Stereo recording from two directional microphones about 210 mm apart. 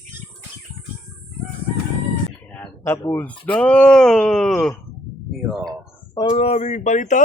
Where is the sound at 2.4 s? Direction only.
5° left (ahead or behind).